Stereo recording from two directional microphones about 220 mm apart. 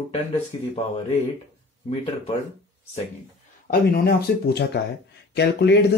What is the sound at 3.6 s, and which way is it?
Speech, 40° left (ahead or behind).